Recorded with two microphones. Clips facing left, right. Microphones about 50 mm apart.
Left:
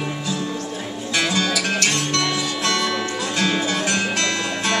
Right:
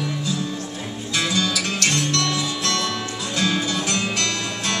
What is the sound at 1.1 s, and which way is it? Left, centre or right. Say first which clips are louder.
Music: left 2 dB; left.